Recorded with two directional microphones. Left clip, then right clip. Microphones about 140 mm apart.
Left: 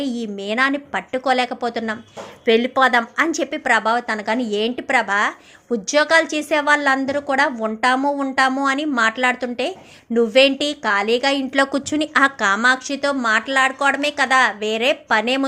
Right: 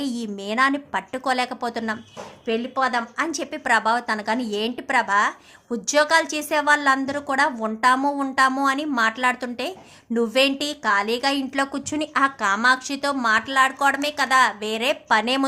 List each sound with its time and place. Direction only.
0.0 s a woman's voice: 5° left (ahead or behind)
2.5 s a woman's voice: 30° left (ahead or behind); by 15.4 s 5° left (ahead or behind)